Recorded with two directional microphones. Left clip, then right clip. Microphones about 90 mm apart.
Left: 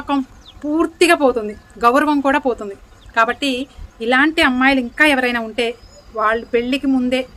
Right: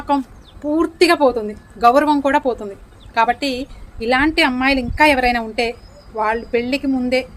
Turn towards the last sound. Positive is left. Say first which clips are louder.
# even
turn(degrees=30)  # may be behind; listen again after turning